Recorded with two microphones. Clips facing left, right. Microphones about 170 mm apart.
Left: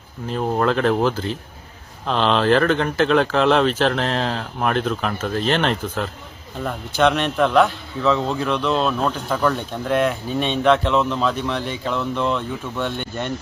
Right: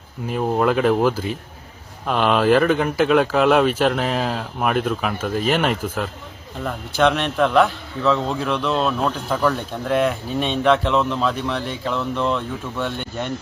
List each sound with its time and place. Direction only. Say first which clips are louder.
0.3 s a man's voice: right 1 dB; 5° right (ahead or behind)